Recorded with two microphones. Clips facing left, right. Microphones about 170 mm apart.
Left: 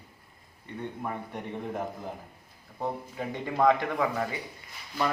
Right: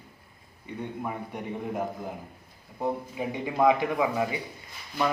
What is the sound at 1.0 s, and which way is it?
A man's voice, 5° right (ahead or behind).